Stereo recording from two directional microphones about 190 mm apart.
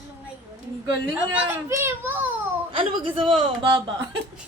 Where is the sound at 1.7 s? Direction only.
10° right (ahead or behind).